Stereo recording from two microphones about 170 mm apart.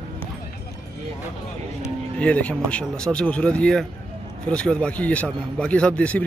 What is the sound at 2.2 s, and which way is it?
A man's voice, 10° left (ahead or behind).